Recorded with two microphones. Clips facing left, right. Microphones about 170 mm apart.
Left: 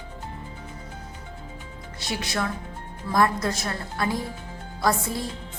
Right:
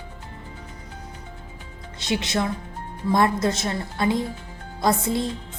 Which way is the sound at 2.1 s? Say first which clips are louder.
Right 4 dB; 20° right (ahead or behind).